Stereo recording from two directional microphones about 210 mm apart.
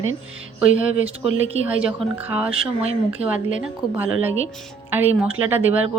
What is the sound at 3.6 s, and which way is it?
A woman's voice, 10° right (ahead or behind).